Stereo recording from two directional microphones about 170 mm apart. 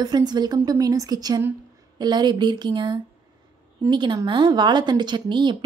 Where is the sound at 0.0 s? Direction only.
25° right (ahead or behind).